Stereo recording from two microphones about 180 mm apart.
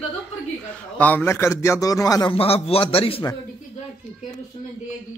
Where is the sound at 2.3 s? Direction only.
35° left (ahead or behind).